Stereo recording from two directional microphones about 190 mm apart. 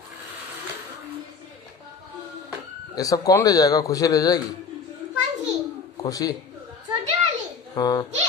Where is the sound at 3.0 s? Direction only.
20° left (ahead or behind).